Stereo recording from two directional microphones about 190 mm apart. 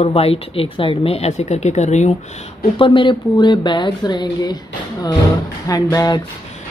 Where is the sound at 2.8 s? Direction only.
25° left (ahead or behind).